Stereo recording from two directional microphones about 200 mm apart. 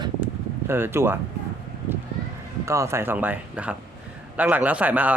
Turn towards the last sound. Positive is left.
turn(degrees=-10)  # may be behind; listen again after turning